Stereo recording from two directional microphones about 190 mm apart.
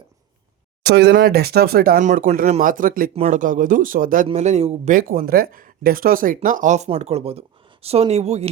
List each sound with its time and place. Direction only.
0.9 s a man's voice: 60° right (ahead or behind); by 4.9 s 35° right (ahead or behind)
4.9 s speech: 50° right (ahead or behind)